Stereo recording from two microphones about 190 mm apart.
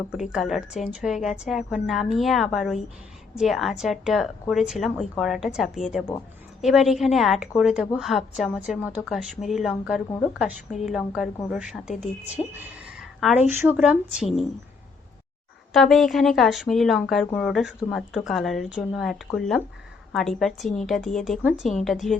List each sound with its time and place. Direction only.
0.1 s speech: 5° right (ahead or behind)
11.9 s speech: 35° left (ahead or behind)
13.1 s a woman's voice: centre (ahead or behind)
15.7 s speech: centre (ahead or behind)